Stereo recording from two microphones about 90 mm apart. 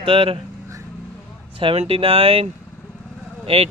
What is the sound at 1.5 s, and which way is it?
Speech, 85° right.